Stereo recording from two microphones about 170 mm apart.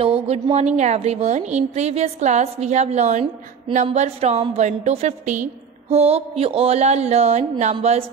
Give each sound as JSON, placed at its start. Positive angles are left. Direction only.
{"t": 0.3, "sound": "a woman's voice", "side_deg": -35}